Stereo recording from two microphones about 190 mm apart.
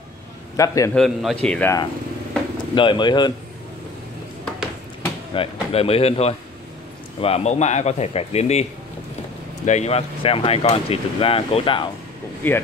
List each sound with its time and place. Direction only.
0.6 s a man's voice: 15° left (ahead or behind)
0.9 s a man's voice: centre (ahead or behind)
2.7 s speech: 25° left (ahead or behind)
5.3 s a man's voice: 30° left (ahead or behind)
9.7 s speech: 35° left (ahead or behind)
12.4 s a man's voice: 10° left (ahead or behind)